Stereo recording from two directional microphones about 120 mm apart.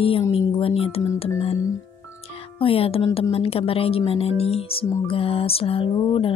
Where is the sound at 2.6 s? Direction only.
50° left (ahead or behind).